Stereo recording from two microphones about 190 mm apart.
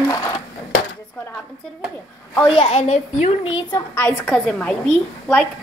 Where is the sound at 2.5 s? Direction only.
35° left (ahead or behind).